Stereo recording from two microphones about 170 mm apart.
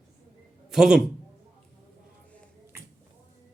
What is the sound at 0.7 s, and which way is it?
Speech, 5° right (ahead or behind).